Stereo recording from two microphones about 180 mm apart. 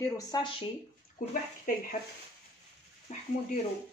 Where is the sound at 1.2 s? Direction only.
50° left (ahead or behind).